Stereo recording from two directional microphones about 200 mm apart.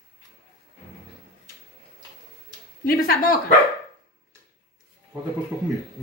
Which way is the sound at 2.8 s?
45° left (ahead or behind).